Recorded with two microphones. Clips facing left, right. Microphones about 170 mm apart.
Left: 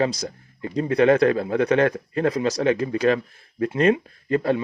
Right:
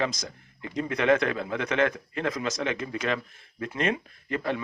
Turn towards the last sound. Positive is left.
turn(degrees=35)  # may be behind; listen again after turning